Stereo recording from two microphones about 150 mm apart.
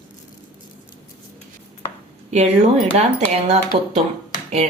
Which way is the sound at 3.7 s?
35° right (ahead or behind).